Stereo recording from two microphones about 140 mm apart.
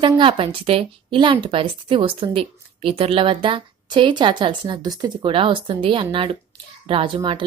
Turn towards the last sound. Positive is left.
turn(degrees=-35)  # may be behind; listen again after turning